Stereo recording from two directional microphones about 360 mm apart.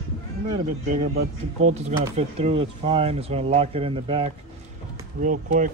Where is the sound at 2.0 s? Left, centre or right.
Centre.